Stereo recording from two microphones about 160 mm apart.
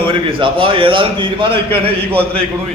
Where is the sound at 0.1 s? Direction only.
30° right (ahead or behind).